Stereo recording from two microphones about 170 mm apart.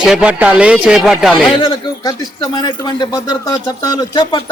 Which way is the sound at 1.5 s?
25° left (ahead or behind).